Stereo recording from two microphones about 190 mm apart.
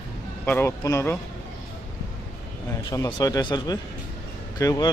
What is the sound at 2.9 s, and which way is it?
Speech, 20° left (ahead or behind).